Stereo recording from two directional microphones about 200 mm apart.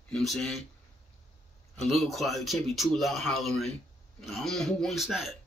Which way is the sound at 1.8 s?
Centre (ahead or behind).